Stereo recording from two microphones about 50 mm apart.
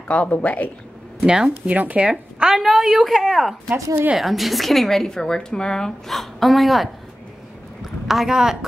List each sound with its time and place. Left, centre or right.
0.1 s speech: left
1.2 s speech: centre
1.7 s speech: right
2.4 s a woman's voice: centre
7.8 s a sound: centre